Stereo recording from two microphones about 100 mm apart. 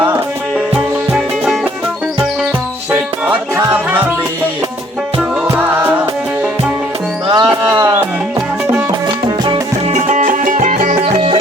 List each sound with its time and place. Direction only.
0.7 s music: 10° right (ahead or behind)
7.3 s music: 50° right (ahead or behind)
11.0 s music: 85° right